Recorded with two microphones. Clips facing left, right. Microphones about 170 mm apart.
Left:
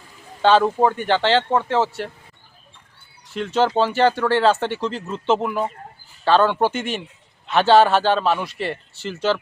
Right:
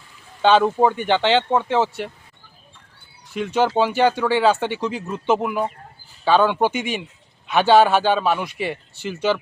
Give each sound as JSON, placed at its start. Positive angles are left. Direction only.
{"t": 0.4, "sound": "speech", "side_deg": -10}
{"t": 3.3, "sound": "speech", "side_deg": -10}